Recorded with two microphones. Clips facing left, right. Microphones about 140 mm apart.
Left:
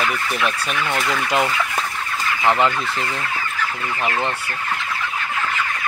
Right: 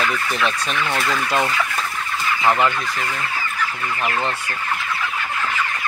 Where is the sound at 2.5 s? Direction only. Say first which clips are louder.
Left 1 dB; 20° left (ahead or behind).